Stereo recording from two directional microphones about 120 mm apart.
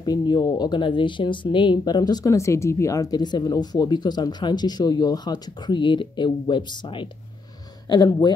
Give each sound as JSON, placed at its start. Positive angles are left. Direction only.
{"t": 0.0, "sound": "speech", "side_deg": 35}